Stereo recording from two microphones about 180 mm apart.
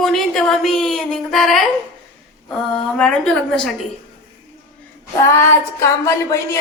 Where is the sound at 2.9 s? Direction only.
5° left (ahead or behind).